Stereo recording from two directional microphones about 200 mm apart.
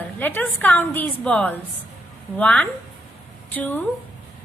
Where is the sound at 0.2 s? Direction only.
10° left (ahead or behind).